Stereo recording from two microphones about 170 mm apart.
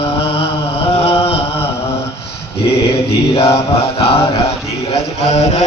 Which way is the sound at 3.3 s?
35° left (ahead or behind).